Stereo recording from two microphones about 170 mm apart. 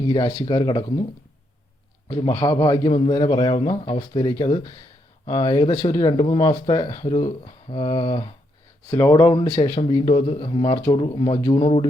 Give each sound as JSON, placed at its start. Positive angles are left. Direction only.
{"t": 0.0, "sound": "speech", "side_deg": 25}
{"t": 2.3, "sound": "speech", "side_deg": 20}
{"t": 8.9, "sound": "speech", "side_deg": 15}
{"t": 10.8, "sound": "speech", "side_deg": 20}
{"t": 11.0, "sound": "speech", "side_deg": 30}